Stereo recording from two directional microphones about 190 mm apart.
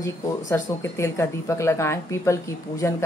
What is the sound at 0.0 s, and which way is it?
A woman's voice, 15° left (ahead or behind).